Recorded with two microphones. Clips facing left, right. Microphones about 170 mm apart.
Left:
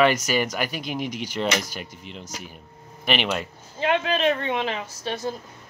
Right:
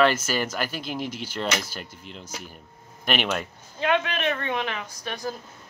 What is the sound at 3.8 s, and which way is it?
Speech, 30° left (ahead or behind).